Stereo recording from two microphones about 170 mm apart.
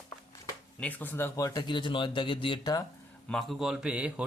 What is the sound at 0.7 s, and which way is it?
A man's voice, 10° left (ahead or behind).